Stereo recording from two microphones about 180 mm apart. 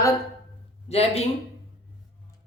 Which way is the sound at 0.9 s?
35° left (ahead or behind).